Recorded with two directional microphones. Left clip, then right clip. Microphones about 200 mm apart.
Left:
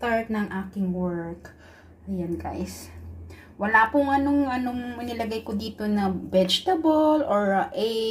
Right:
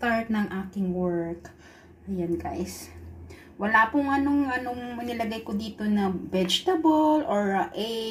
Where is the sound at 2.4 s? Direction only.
Centre (ahead or behind).